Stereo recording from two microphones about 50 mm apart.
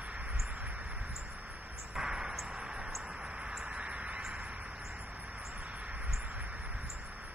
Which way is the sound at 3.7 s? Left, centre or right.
Right.